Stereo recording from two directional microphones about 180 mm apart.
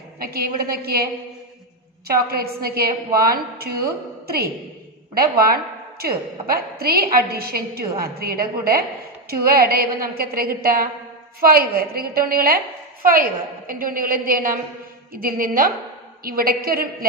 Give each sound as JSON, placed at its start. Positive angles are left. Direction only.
{"t": 0.2, "sound": "a woman's voice", "side_deg": -55}
{"t": 2.0, "sound": "a woman's voice", "side_deg": -60}